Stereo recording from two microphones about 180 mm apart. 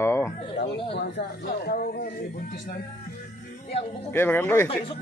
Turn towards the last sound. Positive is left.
turn(degrees=15)  # may be behind; listen again after turning